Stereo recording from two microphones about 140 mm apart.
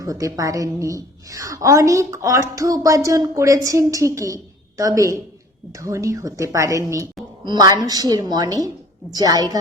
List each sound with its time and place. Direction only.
0.0 s a woman's voice: 25° right (ahead or behind)